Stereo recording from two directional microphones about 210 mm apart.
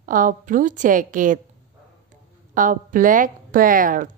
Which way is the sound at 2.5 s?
40° right (ahead or behind).